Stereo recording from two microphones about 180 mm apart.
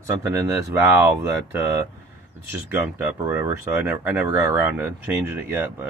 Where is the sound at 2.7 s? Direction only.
10° right (ahead or behind).